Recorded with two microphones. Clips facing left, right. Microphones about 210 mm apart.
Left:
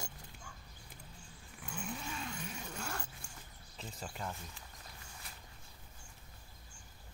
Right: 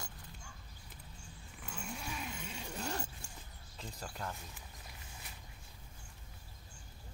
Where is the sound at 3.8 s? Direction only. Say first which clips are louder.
Even; centre (ahead or behind).